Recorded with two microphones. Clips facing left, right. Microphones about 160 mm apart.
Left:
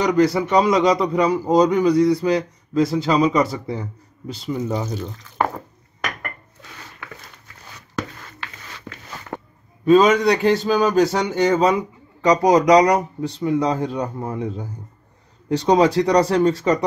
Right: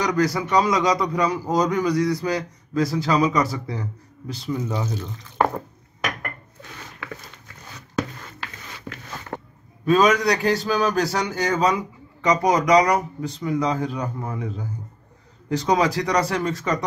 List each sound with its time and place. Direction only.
0.0 s speech: 25° left (ahead or behind)
9.8 s speech: 25° left (ahead or behind)